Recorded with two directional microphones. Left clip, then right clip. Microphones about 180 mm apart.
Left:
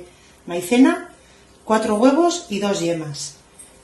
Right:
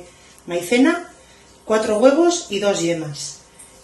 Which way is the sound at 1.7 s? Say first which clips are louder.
Right 2 dB; 55° left (ahead or behind).